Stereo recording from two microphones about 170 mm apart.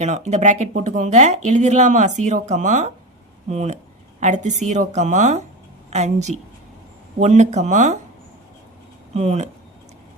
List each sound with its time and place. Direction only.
0.0 s speech: 45° right (ahead or behind)
9.1 s speech: 40° right (ahead or behind)